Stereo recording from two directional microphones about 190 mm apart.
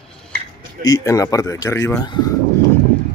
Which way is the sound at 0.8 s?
15° left (ahead or behind).